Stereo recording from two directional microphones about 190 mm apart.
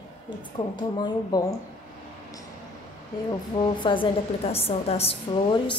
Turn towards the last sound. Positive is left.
turn(degrees=25)  # may be behind; listen again after turning